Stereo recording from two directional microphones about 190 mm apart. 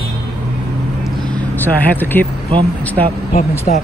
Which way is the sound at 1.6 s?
10° left (ahead or behind).